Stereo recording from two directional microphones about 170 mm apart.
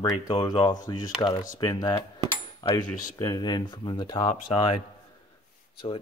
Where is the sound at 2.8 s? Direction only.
50° left (ahead or behind).